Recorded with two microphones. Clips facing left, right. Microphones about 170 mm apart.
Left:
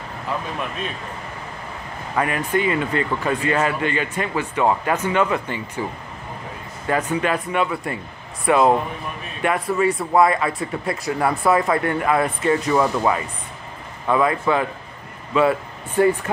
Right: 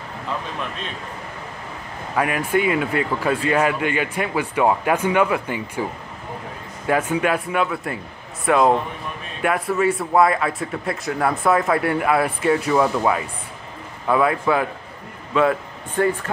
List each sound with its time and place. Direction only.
2.1 s speech: 5° right (ahead or behind)
6.9 s speech: 10° right (ahead or behind); by 16.3 s 10° left (ahead or behind)